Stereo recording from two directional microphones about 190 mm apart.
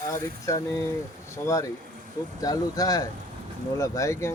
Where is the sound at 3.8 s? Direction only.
15° left (ahead or behind).